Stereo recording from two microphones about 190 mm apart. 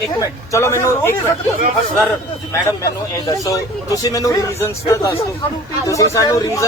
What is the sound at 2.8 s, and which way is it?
Speech, 20° left (ahead or behind).